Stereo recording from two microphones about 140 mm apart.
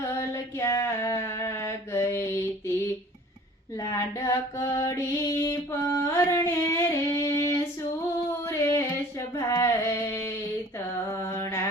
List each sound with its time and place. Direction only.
0.2 s a sound: 20° left (ahead or behind)
3.8 s female singing: 20° left (ahead or behind)
11.1 s music: 20° left (ahead or behind)